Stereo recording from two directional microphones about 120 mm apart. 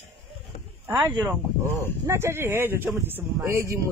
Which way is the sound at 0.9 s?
35° right (ahead or behind).